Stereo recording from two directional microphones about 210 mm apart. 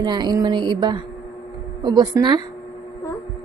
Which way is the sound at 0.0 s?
20° right (ahead or behind).